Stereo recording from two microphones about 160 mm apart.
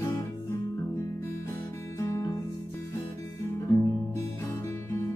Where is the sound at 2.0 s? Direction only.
20° left (ahead or behind).